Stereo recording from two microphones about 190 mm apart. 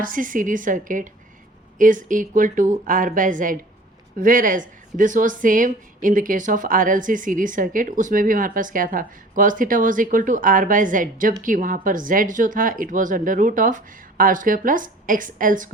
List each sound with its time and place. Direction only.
0.0 s speech: 45° right (ahead or behind)